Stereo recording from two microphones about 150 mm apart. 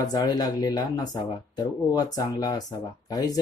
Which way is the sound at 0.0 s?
25° left (ahead or behind).